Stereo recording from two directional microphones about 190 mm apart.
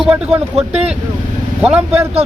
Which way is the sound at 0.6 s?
35° right (ahead or behind).